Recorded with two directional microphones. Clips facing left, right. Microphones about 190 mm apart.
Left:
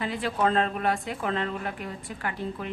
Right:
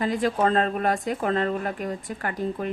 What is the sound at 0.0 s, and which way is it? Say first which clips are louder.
A woman's voice: right 4 dB; 45° right (ahead or behind).